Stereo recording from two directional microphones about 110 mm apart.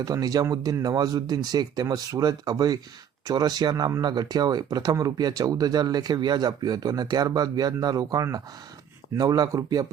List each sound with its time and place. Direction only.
0.0 s speech: 35° right (ahead or behind)